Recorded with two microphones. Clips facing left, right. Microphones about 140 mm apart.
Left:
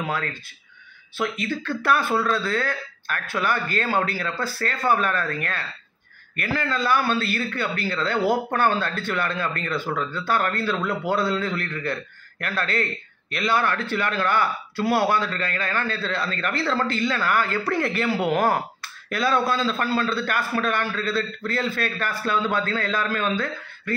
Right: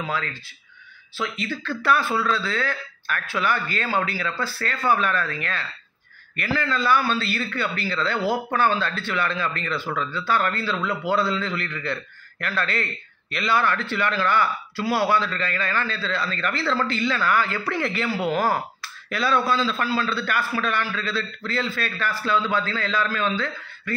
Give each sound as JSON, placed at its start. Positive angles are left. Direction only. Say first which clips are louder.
{"t": 0.1, "sound": "a man's voice", "louder": "left 1 dB", "side_deg": 50}